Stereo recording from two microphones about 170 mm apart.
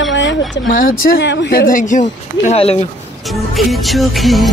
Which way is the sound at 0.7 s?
55° left (ahead or behind).